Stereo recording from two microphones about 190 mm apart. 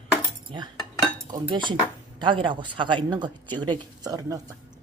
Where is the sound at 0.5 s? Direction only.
30° right (ahead or behind).